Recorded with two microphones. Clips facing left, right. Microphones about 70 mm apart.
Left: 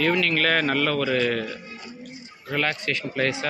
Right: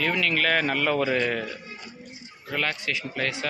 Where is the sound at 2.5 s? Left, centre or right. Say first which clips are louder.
Left 3 dB; centre.